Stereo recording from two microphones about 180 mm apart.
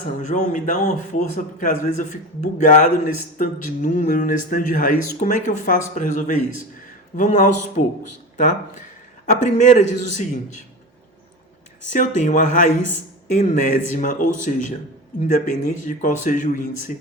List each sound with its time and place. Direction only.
0.2 s speech: 40° left (ahead or behind)
9.2 s speech: 40° left (ahead or behind)
11.9 s speech: 45° left (ahead or behind)